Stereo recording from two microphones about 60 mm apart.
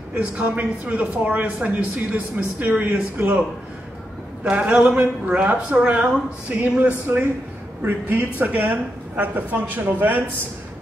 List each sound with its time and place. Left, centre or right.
0.1 s speech: right
4.5 s speech: right
7.1 s speech: right